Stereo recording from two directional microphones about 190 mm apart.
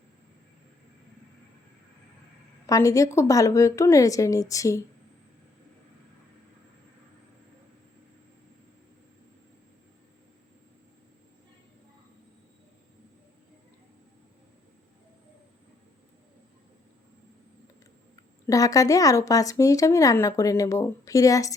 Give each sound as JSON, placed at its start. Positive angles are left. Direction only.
{"t": 2.6, "sound": "speech", "side_deg": 15}
{"t": 18.4, "sound": "speech", "side_deg": 15}